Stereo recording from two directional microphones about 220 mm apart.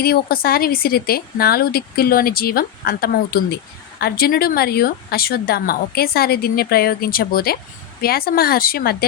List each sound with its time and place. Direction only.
0.0 s speech: 45° left (ahead or behind)